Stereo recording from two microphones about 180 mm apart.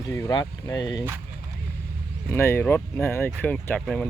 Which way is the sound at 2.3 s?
15° left (ahead or behind).